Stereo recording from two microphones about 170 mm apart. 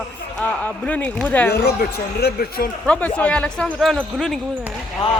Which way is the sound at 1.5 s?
70° left (ahead or behind).